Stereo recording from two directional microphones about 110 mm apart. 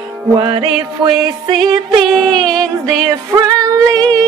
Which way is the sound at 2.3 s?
35° right (ahead or behind).